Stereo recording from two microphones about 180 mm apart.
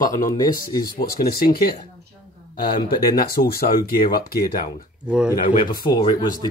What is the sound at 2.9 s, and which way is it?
Speech, 55° left (ahead or behind).